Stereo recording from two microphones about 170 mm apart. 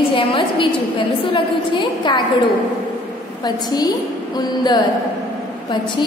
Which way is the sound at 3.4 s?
25° left (ahead or behind).